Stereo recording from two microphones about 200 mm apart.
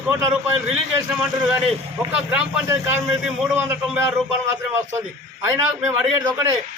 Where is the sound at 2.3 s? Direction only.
10° right (ahead or behind).